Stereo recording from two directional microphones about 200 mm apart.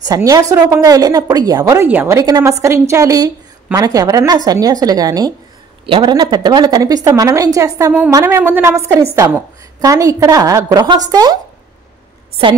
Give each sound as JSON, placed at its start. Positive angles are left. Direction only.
{"t": 0.0, "sound": "a woman's voice", "side_deg": -15}